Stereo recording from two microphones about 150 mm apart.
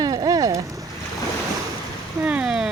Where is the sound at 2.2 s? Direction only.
5° right (ahead or behind).